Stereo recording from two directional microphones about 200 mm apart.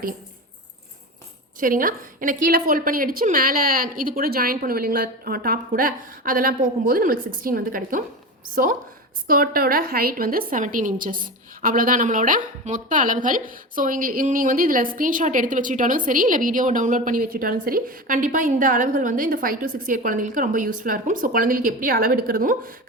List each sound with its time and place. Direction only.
1.5 s a woman's voice: 45° right (ahead or behind)
9.2 s a woman's voice: 45° right (ahead or behind)